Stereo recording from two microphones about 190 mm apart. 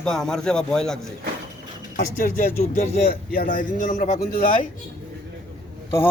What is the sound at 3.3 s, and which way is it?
Speech, 45° left (ahead or behind).